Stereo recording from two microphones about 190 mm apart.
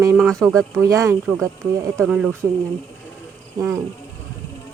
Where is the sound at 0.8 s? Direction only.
15° right (ahead or behind).